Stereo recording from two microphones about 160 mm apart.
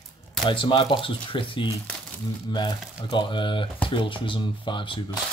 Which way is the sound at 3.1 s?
30° left (ahead or behind).